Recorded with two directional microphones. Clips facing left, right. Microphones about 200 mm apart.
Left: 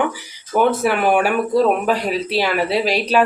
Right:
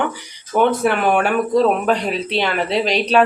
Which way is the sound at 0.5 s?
5° left (ahead or behind).